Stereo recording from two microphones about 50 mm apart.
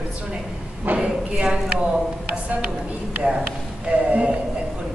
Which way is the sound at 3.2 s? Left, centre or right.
Centre.